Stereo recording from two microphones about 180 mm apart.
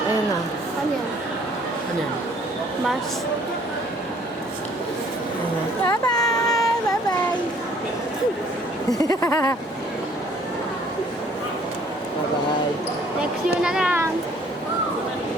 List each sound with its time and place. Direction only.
5.9 s child singing: 20° left (ahead or behind)
9.0 s a sound: 20° left (ahead or behind)
13.6 s a child's voice: 5° right (ahead or behind)